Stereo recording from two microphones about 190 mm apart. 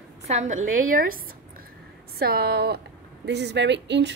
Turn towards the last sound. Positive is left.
turn(degrees=-65)  # may be behind; listen again after turning